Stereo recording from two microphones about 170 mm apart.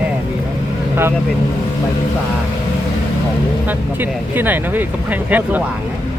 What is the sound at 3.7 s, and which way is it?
Speech, 10° right (ahead or behind).